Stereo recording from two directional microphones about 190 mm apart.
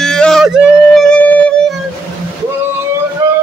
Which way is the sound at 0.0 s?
5° left (ahead or behind).